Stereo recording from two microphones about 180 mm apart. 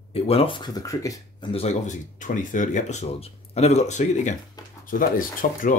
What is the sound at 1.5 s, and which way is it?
Speech, 35° left (ahead or behind).